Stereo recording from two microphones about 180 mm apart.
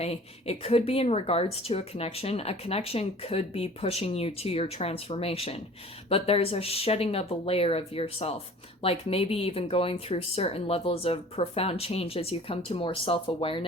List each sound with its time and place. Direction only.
0.0 s speech: 35° left (ahead or behind)